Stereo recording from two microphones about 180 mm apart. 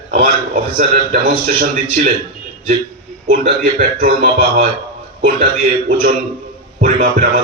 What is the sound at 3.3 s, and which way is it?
Speech, 45° right (ahead or behind).